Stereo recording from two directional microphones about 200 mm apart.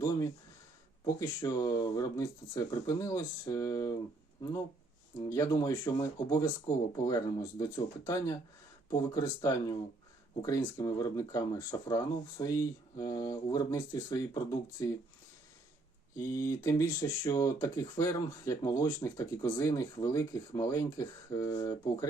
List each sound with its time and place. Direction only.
0.0 s a sound: 20° left (ahead or behind)
1.0 s speech: 15° left (ahead or behind)
5.3 s speech: 15° left (ahead or behind)
10.8 s speech: 15° left (ahead or behind)
16.1 s speech: 15° left (ahead or behind)